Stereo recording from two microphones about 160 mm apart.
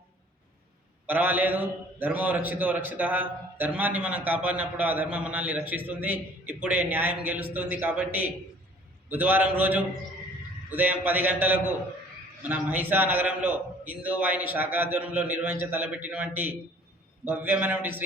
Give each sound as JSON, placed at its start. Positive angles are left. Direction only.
{"t": 1.0, "sound": "a man's voice", "side_deg": -10}